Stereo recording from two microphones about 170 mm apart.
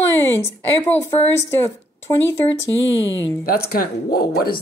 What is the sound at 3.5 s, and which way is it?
Speech, 60° left (ahead or behind).